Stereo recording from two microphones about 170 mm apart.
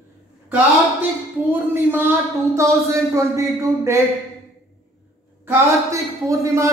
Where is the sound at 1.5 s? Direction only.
10° right (ahead or behind).